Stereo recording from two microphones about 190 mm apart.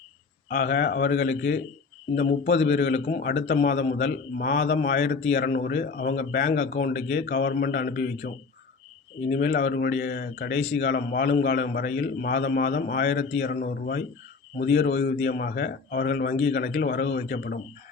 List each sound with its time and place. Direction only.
0.4 s speech: 60° left (ahead or behind)
2.1 s speech: 55° left (ahead or behind)
9.3 s speech: 60° left (ahead or behind)